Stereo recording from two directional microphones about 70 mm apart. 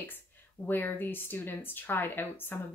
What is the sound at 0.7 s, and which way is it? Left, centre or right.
Speech, left.